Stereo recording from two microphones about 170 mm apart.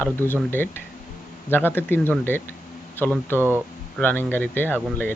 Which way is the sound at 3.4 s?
15° right (ahead or behind).